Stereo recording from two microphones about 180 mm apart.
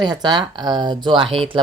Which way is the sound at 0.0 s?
25° right (ahead or behind).